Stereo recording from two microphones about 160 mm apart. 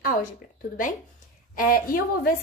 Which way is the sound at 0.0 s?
60° left (ahead or behind).